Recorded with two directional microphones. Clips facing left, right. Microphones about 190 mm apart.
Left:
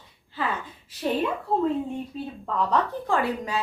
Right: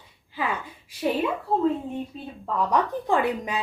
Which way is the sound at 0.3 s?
10° right (ahead or behind).